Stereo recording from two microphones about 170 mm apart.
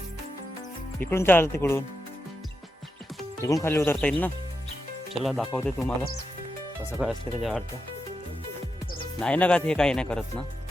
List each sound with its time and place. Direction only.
0.9 s speech: 15° left (ahead or behind)
3.4 s speech: 15° left (ahead or behind)
5.2 s speech: centre (ahead or behind)
7.0 s speech: centre (ahead or behind)
9.1 s speech: 5° left (ahead or behind)